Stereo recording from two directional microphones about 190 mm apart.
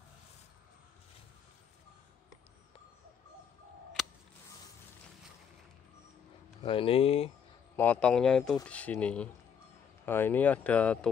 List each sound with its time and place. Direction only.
4.0 s scissors: centre (ahead or behind)
6.6 s speech: 30° left (ahead or behind)
7.7 s speech: 10° left (ahead or behind)